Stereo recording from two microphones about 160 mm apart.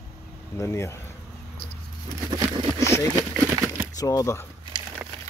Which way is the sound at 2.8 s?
20° left (ahead or behind).